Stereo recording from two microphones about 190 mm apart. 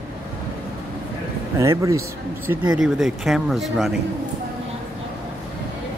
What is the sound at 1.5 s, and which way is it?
Speech, 15° right (ahead or behind).